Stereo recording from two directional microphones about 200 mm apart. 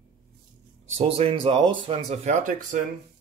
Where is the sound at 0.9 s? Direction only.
30° right (ahead or behind).